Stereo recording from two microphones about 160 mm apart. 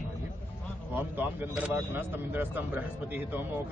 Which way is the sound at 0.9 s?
10° right (ahead or behind).